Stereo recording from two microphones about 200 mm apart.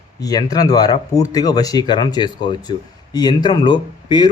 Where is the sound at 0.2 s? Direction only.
20° left (ahead or behind).